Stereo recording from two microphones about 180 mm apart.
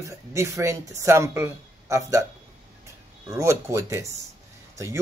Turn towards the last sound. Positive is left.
turn(degrees=-15)  # may be behind; listen again after turning